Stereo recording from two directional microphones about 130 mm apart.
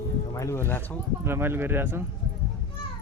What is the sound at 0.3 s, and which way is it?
Speech, 20° left (ahead or behind).